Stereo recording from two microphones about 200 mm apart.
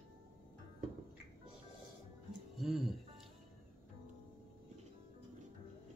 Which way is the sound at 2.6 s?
Centre (ahead or behind).